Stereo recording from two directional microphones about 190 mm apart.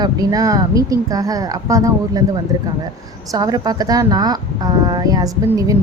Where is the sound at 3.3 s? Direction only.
20° right (ahead or behind).